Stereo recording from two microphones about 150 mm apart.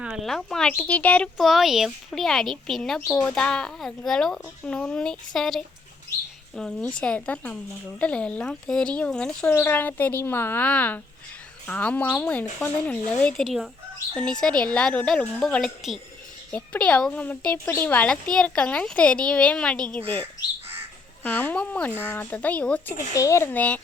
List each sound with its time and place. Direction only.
0.0 s speech: 5° right (ahead or behind)
21.2 s speech: 10° left (ahead or behind)
23.1 s speech: 20° left (ahead or behind)